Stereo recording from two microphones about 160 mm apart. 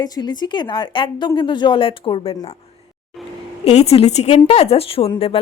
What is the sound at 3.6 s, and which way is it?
Speech, 40° left (ahead or behind).